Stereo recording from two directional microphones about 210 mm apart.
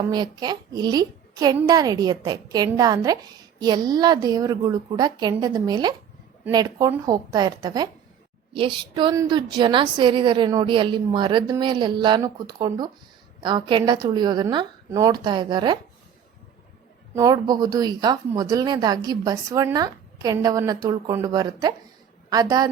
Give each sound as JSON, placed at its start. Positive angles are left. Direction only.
{"t": 0.1, "sound": "a woman's voice", "side_deg": -20}
{"t": 17.2, "sound": "a woman's voice", "side_deg": -15}